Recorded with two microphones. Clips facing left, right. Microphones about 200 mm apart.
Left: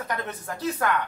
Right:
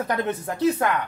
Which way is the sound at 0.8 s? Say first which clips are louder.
Right 2 dB; 20° right (ahead or behind).